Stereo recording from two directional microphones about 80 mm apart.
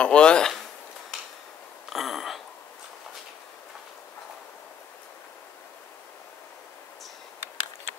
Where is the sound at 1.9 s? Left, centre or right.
Centre.